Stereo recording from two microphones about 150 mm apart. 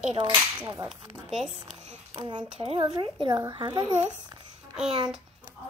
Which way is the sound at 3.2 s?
30° right (ahead or behind).